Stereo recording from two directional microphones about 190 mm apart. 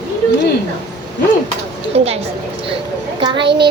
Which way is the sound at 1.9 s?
30° right (ahead or behind).